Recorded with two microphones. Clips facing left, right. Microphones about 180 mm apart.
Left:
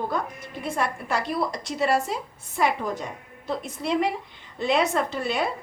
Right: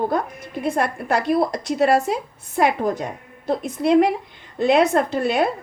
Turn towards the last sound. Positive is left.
turn(degrees=-50)  # may be behind; listen again after turning